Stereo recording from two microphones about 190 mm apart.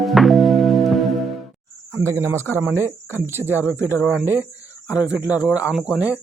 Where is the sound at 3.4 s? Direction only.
10° right (ahead or behind).